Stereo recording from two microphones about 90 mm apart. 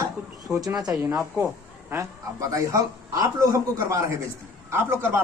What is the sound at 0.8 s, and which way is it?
Speech, 10° right (ahead or behind).